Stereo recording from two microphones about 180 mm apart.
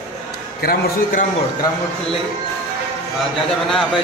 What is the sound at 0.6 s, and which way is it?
Speech, 55° left (ahead or behind).